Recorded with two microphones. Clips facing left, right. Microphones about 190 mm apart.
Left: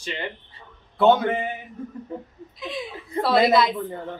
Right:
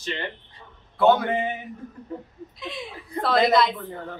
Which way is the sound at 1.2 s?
15° right (ahead or behind).